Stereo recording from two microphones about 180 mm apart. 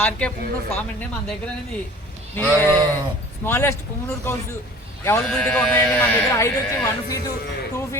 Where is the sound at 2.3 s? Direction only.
10° left (ahead or behind).